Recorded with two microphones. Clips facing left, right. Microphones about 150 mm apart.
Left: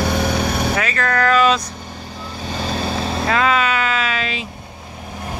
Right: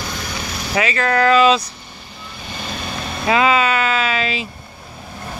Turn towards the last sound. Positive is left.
turn(degrees=0)  # may be behind; listen again after turning